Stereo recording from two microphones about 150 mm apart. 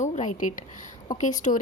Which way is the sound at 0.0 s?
55° left (ahead or behind).